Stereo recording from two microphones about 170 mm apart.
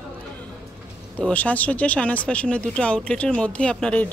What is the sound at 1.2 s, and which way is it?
Speech, 10° left (ahead or behind).